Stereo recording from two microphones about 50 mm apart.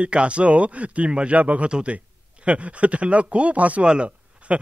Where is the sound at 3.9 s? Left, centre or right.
Right.